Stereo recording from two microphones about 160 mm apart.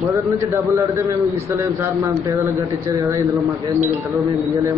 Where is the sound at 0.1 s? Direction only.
20° right (ahead or behind).